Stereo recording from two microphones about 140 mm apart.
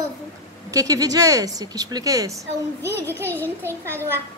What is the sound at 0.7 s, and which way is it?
A woman's voice, 25° right (ahead or behind).